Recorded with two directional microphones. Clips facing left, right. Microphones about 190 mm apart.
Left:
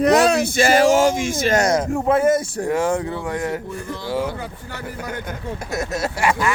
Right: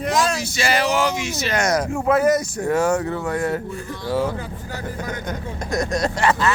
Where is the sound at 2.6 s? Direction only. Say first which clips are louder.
Right 4 dB; 15° left (ahead or behind).